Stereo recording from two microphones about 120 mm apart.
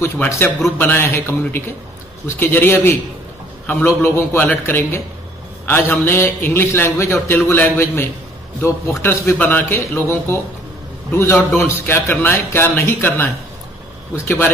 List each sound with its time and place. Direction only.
0.0 s a man's voice: 20° left (ahead or behind)